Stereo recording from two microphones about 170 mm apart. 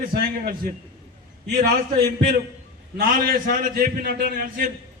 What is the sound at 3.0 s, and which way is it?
A man's voice, 55° right (ahead or behind).